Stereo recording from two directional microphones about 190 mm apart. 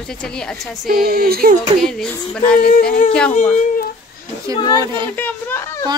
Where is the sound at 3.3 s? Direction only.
35° left (ahead or behind).